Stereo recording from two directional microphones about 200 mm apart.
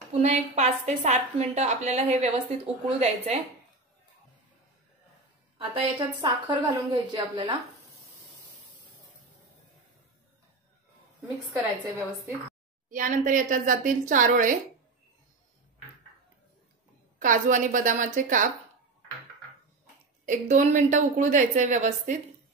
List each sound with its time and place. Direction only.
0.1 s a woman's voice: 35° right (ahead or behind)
5.8 s a woman's voice: 25° right (ahead or behind)
12.9 s a woman's voice: 40° right (ahead or behind)
17.2 s a woman's voice: 40° right (ahead or behind)
20.2 s a woman's voice: 40° right (ahead or behind)